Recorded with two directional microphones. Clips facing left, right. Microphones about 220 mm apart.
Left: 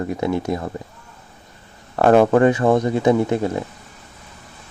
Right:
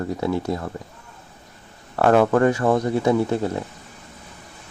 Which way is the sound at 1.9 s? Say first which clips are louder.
Left 3 dB; 15° left (ahead or behind).